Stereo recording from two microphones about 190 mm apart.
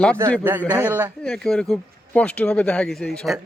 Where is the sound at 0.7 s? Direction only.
10° right (ahead or behind).